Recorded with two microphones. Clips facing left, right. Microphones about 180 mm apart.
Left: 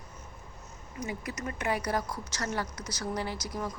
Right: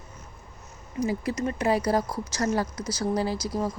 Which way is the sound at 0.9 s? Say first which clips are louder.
Right 10 dB; 35° right (ahead or behind).